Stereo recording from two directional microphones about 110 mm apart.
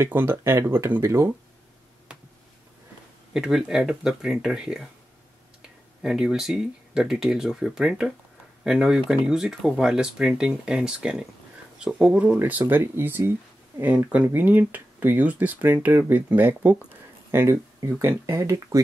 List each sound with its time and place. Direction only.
0.0 s speech: 20° right (ahead or behind)
3.3 s speech: 5° right (ahead or behind)
6.0 s speech: 5° right (ahead or behind)
17.3 s a sound: 25° right (ahead or behind)
17.9 s speech: 20° right (ahead or behind)